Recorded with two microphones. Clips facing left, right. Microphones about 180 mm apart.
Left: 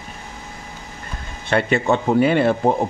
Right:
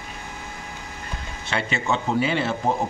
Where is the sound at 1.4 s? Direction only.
55° left (ahead or behind).